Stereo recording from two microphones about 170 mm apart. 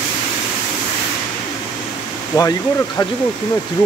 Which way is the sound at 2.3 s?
25° left (ahead or behind).